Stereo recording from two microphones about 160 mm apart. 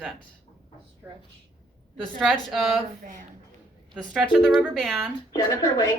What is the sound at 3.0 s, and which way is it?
Speech, 50° right (ahead or behind).